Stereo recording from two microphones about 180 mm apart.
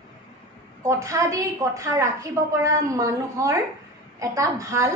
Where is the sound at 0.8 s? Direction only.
15° right (ahead or behind).